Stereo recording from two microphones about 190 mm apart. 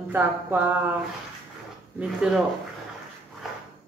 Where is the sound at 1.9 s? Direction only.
5° right (ahead or behind).